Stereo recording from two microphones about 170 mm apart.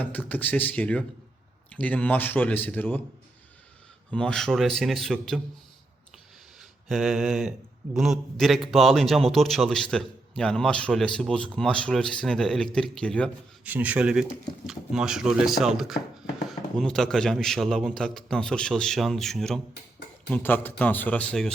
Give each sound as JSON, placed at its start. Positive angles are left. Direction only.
{"t": 0.0, "sound": "speech", "side_deg": 10}
{"t": 4.1, "sound": "a man's voice", "side_deg": 5}
{"t": 6.6, "sound": "a man's voice", "side_deg": 0}
{"t": 13.7, "sound": "a man's voice", "side_deg": -10}